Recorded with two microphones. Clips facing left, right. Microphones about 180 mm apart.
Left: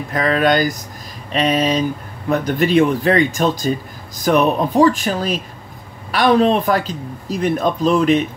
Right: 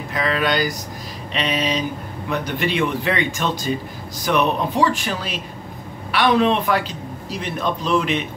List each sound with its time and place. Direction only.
0.1 s a man's voice: 45° left (ahead or behind)